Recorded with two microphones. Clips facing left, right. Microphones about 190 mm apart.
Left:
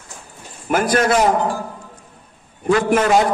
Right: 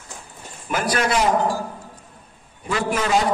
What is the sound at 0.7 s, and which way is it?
Speech, 50° left (ahead or behind).